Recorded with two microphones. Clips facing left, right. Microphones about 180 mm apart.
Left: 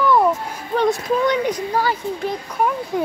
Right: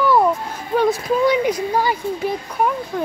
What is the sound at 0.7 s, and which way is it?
Speech, 10° right (ahead or behind).